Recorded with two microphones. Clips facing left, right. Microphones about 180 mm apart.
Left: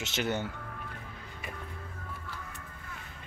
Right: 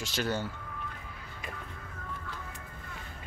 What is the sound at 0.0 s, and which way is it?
Speech, 20° left (ahead or behind).